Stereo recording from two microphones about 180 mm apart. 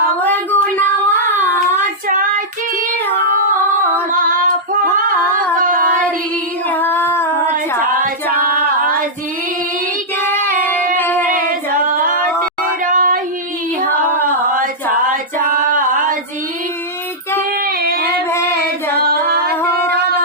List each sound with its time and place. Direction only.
0.2 s child singing: 10° left (ahead or behind)
2.0 s child singing: 50° right (ahead or behind)
4.1 s female singing: 50° right (ahead or behind)
5.5 s a sound: 50° right (ahead or behind)
6.7 s female singing: 10° left (ahead or behind)
8.0 s female singing: 50° right (ahead or behind)
10.6 s a sound: 10° left (ahead or behind)
10.9 s music: 10° left (ahead or behind)
11.8 s singing: 50° right (ahead or behind)
12.8 s child singing: 50° right (ahead or behind)
15.1 s female singing: 50° right (ahead or behind)
17.7 s child singing: 55° right (ahead or behind)
18.3 s child singing: 15° left (ahead or behind)
18.9 s singing: 60° right (ahead or behind)